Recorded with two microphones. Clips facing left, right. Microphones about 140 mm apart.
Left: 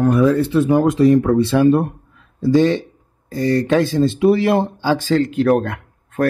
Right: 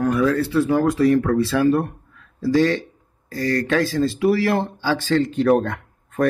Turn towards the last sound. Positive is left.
turn(degrees=0)  # may be behind; listen again after turning